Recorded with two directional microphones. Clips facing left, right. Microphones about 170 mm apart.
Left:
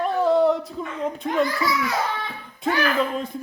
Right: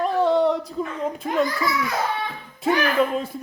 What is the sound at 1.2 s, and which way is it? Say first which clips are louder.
Speech: even; 5° right (ahead or behind).